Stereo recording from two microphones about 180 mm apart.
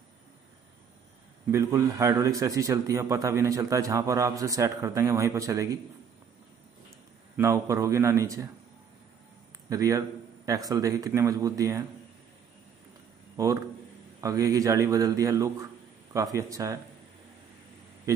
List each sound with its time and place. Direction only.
1.5 s a man's voice: 15° right (ahead or behind)
7.3 s a man's voice: 20° right (ahead or behind)
9.7 s a man's voice: 20° right (ahead or behind)
13.4 s a man's voice: 20° right (ahead or behind)
18.1 s speech: 15° right (ahead or behind)